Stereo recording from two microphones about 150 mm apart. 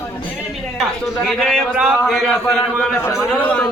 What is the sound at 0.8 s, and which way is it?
A man's voice, centre (ahead or behind).